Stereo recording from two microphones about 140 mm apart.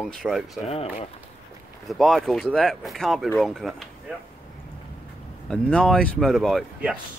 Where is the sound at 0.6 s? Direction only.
45° left (ahead or behind).